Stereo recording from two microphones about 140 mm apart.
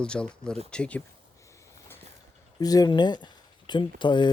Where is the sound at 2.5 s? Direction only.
25° left (ahead or behind).